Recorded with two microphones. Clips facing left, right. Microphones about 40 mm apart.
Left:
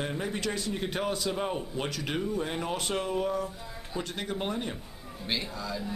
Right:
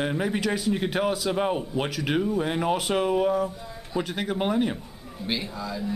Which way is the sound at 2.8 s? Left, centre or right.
Centre.